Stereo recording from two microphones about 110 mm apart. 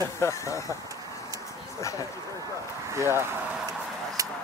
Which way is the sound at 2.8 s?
25° right (ahead or behind).